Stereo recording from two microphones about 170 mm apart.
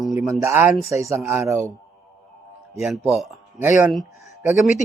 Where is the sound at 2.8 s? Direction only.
5° right (ahead or behind).